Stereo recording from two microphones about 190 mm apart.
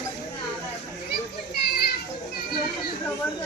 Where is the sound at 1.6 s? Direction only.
55° left (ahead or behind).